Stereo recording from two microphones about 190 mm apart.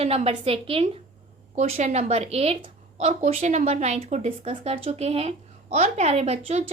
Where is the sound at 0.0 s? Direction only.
30° right (ahead or behind).